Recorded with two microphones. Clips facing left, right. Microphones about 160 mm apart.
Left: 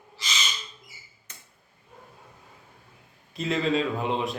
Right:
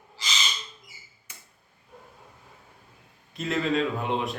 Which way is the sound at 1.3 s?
10° right (ahead or behind).